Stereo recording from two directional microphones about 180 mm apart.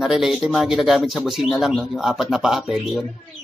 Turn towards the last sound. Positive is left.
turn(degrees=0)  # may be behind; listen again after turning